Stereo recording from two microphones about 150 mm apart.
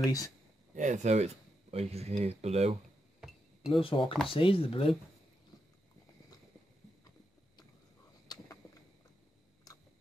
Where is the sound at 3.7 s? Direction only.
35° left (ahead or behind).